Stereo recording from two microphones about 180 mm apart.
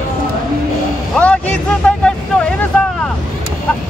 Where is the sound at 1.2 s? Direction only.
5° left (ahead or behind).